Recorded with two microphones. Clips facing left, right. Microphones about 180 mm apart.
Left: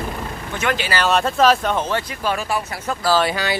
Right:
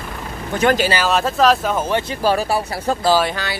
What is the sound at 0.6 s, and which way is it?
Speech, 40° right (ahead or behind).